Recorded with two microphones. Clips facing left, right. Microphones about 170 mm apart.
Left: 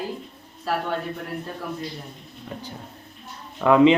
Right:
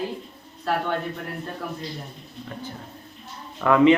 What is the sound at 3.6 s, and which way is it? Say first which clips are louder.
Speech: left 1 dB; 15° left (ahead or behind).